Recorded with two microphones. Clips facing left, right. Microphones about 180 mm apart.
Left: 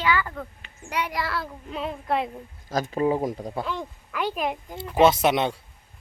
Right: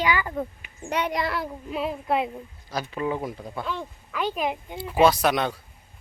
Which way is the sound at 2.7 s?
45° left (ahead or behind).